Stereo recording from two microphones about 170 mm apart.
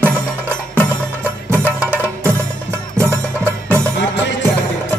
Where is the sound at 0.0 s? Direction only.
10° right (ahead or behind).